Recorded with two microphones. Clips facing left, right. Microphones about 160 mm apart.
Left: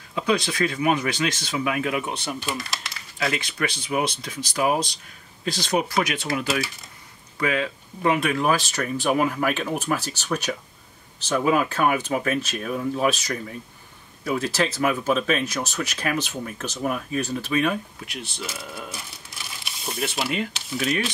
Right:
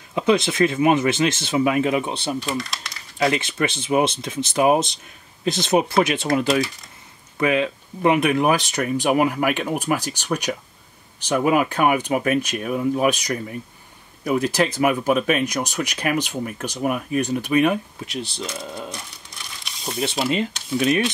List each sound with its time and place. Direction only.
0.1 s speech: 20° right (ahead or behind)
2.4 s speech: centre (ahead or behind)
3.2 s speech: 25° right (ahead or behind)
7.3 s speech: 20° right (ahead or behind)
18.1 s speech: 35° right (ahead or behind)
18.8 s crumpling: 5° left (ahead or behind)